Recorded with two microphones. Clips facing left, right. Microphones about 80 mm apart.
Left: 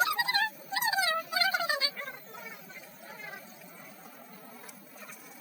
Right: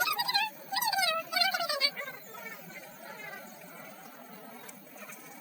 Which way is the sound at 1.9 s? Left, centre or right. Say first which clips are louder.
Even; centre.